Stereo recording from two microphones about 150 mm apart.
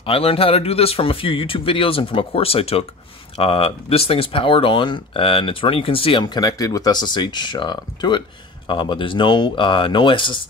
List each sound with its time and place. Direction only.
0.0 s speech: 40° left (ahead or behind)